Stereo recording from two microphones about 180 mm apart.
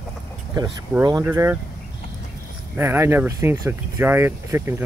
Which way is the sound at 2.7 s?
15° right (ahead or behind).